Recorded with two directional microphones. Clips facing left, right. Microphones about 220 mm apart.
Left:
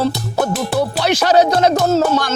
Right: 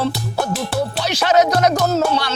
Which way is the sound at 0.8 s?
70° left (ahead or behind).